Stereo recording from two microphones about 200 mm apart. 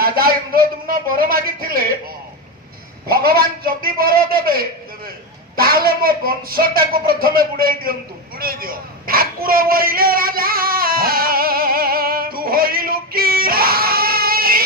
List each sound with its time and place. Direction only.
0.0 s a man's voice: 50° right (ahead or behind)
3.1 s speech: 50° right (ahead or behind)
8.4 s a sound: 50° right (ahead or behind)